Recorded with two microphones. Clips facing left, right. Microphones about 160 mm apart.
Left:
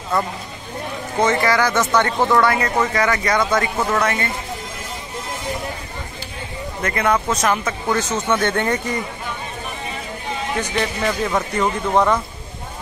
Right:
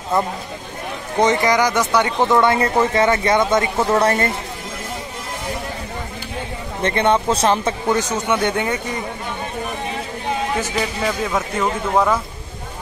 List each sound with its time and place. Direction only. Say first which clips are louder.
1.2 s speech: right 2 dB; 20° right (ahead or behind); by 4.3 s 35° right (ahead or behind)
6.8 s speech: right 3 dB; 30° right (ahead or behind)
7.9 s speech: even; 15° right (ahead or behind)
10.6 s a man's voice: even; 5° right (ahead or behind)